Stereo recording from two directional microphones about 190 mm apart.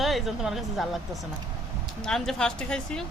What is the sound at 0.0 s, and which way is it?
Speech, centre (ahead or behind).